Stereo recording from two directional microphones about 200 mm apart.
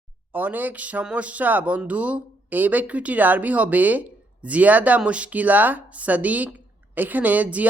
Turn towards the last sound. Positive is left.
turn(degrees=-5)  # may be behind; listen again after turning